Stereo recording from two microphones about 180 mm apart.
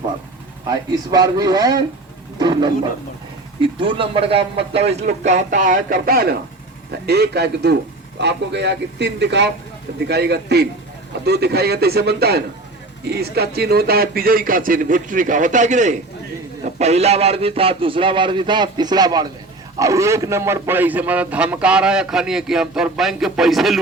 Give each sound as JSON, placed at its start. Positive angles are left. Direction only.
{"t": 0.7, "sound": "speech", "side_deg": -20}
{"t": 2.4, "sound": "wild animals", "side_deg": -25}
{"t": 3.6, "sound": "a man's voice", "side_deg": -30}